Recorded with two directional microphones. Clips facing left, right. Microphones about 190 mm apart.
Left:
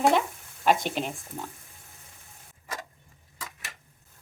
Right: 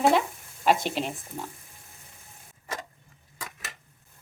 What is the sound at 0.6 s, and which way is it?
Speech, centre (ahead or behind).